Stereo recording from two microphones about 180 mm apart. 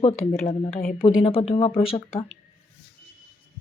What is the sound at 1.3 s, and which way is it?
Speech, 30° left (ahead or behind).